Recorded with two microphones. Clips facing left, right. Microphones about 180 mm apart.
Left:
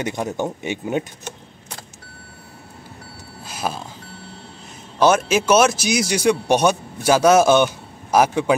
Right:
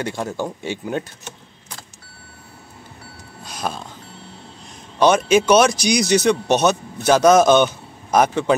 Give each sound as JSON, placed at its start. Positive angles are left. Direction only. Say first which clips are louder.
{"t": 0.0, "sound": "speech", "louder": "left 1 dB", "side_deg": 20}
{"t": 3.4, "sound": "vehicle", "louder": "left 1 dB", "side_deg": 5}
{"t": 4.9, "sound": "speech", "louder": "right 2 dB", "side_deg": 5}